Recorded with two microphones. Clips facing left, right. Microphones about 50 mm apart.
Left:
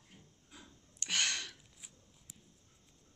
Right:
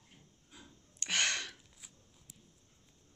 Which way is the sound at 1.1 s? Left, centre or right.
Centre.